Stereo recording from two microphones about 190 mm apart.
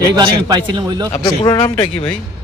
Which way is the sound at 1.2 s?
20° left (ahead or behind).